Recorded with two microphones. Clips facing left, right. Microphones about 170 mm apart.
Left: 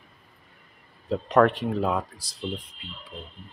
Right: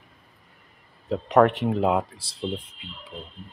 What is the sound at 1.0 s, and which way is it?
Speech, 15° right (ahead or behind).